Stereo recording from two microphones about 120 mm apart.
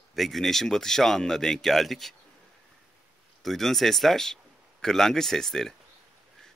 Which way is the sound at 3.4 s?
Centre (ahead or behind).